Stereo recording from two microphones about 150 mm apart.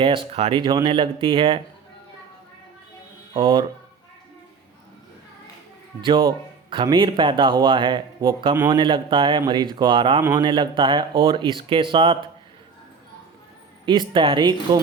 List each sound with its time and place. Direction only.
0.0 s a man's voice: 35° right (ahead or behind)
3.3 s a man's voice: 30° right (ahead or behind)
6.0 s a man's voice: 35° right (ahead or behind)
13.8 s a man's voice: 30° right (ahead or behind)